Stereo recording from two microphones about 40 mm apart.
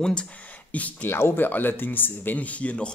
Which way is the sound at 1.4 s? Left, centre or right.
Left.